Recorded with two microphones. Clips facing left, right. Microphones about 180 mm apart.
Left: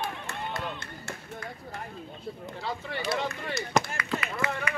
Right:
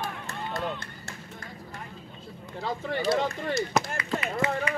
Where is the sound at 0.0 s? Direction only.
45° right (ahead or behind).